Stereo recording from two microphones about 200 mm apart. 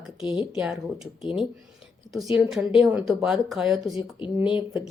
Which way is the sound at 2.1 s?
Centre (ahead or behind).